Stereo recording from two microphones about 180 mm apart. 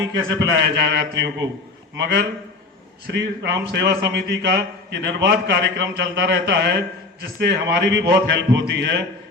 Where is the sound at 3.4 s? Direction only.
75° right (ahead or behind).